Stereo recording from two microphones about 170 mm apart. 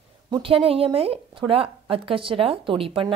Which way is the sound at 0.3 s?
30° right (ahead or behind).